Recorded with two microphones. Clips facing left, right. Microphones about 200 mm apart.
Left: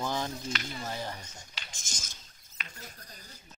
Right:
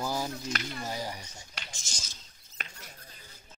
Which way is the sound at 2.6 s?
50° right (ahead or behind).